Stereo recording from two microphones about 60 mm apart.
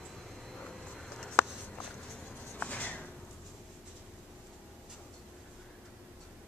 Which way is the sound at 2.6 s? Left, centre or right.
Left.